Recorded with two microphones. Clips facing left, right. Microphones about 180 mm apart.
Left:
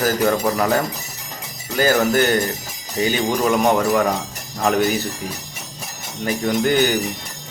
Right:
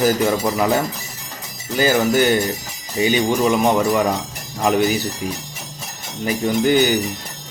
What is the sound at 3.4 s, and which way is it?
Speech, 5° right (ahead or behind).